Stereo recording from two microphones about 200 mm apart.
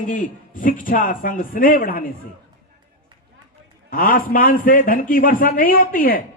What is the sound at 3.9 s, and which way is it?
A man's voice, 45° left (ahead or behind).